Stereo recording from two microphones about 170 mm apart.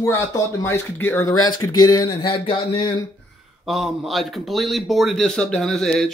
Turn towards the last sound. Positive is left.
turn(degrees=0)  # may be behind; listen again after turning